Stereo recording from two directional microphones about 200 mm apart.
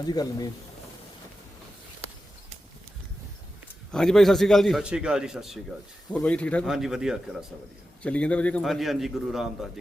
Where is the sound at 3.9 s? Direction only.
5° left (ahead or behind).